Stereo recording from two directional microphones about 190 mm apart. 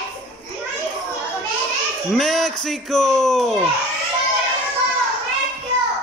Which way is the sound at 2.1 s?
Centre (ahead or behind).